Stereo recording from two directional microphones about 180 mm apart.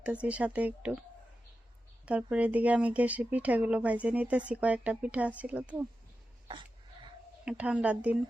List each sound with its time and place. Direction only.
0.0 s speech: 5° right (ahead or behind)
2.0 s speech: 5° right (ahead or behind)
6.5 s a sound: 25° right (ahead or behind)
7.4 s speech: 10° right (ahead or behind)